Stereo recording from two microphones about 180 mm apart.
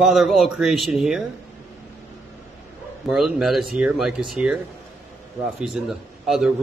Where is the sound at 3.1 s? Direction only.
Centre (ahead or behind).